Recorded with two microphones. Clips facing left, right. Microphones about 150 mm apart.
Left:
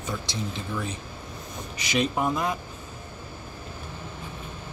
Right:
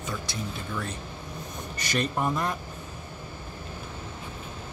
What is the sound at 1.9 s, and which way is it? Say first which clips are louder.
Speech: left 2 dB; 5° left (ahead or behind).